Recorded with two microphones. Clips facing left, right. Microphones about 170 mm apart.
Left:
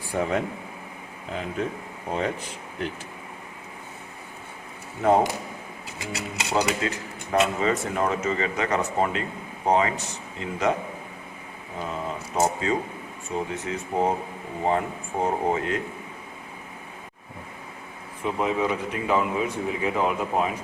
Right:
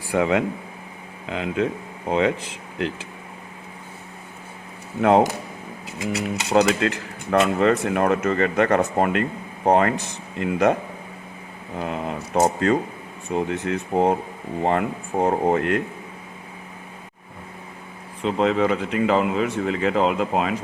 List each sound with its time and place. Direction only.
0.1 s speech: 90° right
4.9 s speech: 75° right (ahead or behind)
6.5 s speech: 65° right (ahead or behind)
11.8 s speech: 65° right (ahead or behind)
18.2 s speech: 85° right